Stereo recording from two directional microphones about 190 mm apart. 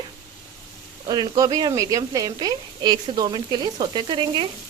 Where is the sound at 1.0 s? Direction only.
20° right (ahead or behind).